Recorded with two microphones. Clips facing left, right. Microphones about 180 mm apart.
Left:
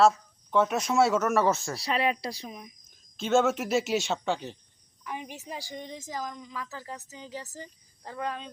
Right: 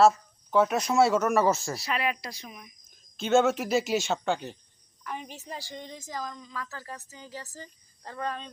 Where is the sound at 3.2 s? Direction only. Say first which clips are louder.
Right 1 dB; centre (ahead or behind).